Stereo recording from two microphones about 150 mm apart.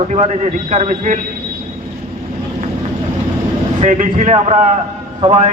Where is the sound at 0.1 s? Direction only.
50° right (ahead or behind).